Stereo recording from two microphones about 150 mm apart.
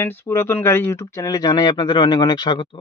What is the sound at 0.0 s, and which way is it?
Speech, 15° left (ahead or behind).